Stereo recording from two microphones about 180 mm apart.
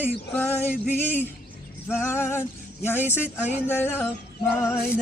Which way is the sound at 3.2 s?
5° right (ahead or behind).